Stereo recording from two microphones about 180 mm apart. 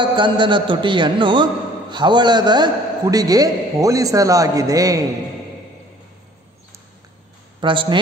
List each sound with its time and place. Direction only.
0.0 s a man's voice: 25° right (ahead or behind)
7.6 s a man's voice: 25° right (ahead or behind)